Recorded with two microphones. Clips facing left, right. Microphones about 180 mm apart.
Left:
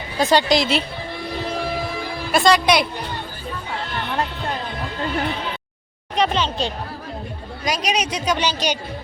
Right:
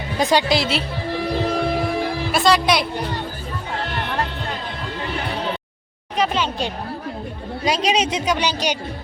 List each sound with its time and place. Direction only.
0.2 s a woman's voice: 10° right (ahead or behind)
2.3 s speech: centre (ahead or behind)
6.1 s a sound: 5° right (ahead or behind)
7.6 s a woman's voice: 25° right (ahead or behind)